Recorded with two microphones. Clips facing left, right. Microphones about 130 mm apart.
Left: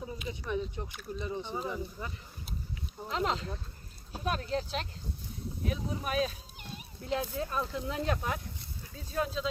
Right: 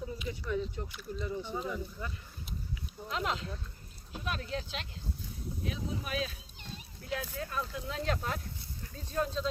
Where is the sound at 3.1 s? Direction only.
35° left (ahead or behind).